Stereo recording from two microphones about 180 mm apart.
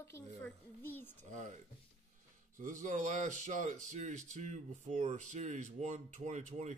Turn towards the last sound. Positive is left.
turn(degrees=-40)  # may be behind; listen again after turning